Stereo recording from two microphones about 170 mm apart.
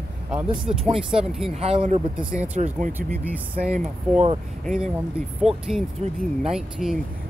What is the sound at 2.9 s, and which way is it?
Speech, 10° right (ahead or behind).